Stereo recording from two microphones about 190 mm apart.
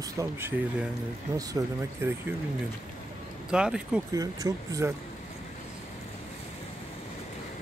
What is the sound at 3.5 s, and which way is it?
Speech, 5° right (ahead or behind).